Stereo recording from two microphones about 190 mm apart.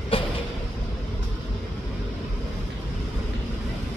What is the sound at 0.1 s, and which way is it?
Vehicle, 30° left (ahead or behind).